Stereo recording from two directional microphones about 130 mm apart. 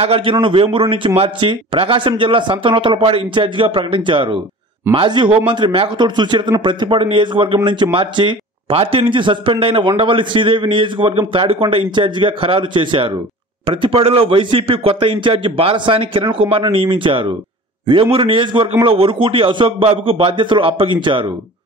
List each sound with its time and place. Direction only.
0.0 s a man's voice: 45° right (ahead or behind)